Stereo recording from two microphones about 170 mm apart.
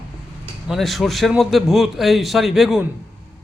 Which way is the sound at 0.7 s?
Centre (ahead or behind).